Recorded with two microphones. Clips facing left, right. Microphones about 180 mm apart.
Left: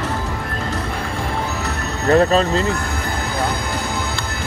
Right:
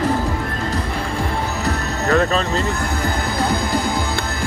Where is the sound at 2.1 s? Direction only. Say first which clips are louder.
Left 4 dB; 35° left (ahead or behind).